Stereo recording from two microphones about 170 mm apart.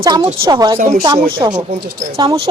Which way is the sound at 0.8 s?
50° right (ahead or behind).